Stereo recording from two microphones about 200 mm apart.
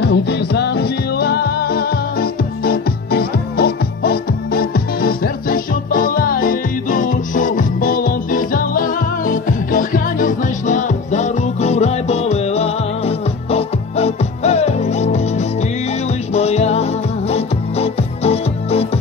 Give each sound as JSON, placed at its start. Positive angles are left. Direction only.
{"t": 0.0, "sound": "music", "side_deg": 60}